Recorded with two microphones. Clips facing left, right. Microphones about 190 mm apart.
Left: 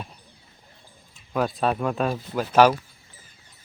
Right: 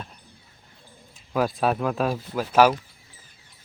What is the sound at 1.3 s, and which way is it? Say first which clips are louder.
Speech: right 1 dB; centre (ahead or behind).